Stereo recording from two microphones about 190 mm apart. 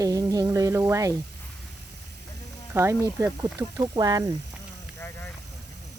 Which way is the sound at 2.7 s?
15° right (ahead or behind).